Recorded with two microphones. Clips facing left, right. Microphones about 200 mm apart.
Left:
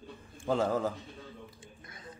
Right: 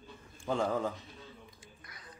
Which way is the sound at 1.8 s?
25° left (ahead or behind).